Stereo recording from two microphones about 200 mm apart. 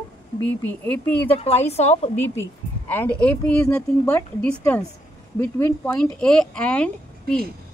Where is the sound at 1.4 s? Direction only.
30° left (ahead or behind).